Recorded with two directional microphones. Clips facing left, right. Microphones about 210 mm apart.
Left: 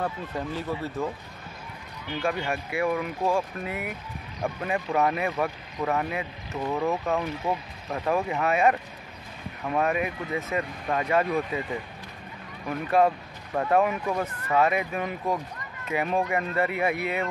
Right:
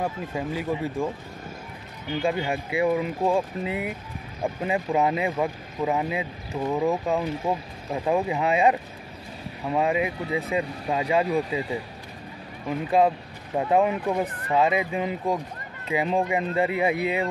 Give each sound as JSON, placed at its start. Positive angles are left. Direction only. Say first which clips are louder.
{"t": 0.0, "sound": "speech", "louder": "right 2 dB", "side_deg": -10}